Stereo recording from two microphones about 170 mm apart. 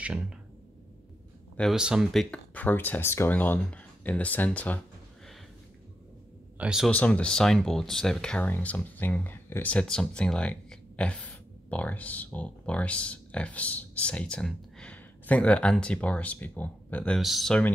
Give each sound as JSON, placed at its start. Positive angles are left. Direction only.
{"t": 1.6, "sound": "speech", "side_deg": -5}
{"t": 6.6, "sound": "speech", "side_deg": -5}
{"t": 6.9, "sound": "speech", "side_deg": 5}